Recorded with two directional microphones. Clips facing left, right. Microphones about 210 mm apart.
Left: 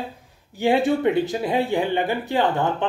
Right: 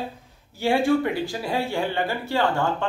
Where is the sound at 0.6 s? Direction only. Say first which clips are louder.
Left 2 dB; 20° left (ahead or behind).